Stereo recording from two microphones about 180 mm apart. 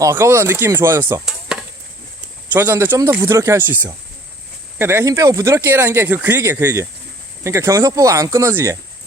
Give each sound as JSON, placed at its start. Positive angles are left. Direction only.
{"t": 0.0, "sound": "speech", "side_deg": -15}
{"t": 1.2, "sound": "chop", "side_deg": -5}
{"t": 2.5, "sound": "speech", "side_deg": -10}